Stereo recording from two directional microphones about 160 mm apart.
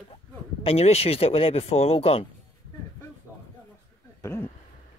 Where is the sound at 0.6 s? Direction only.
40° left (ahead or behind).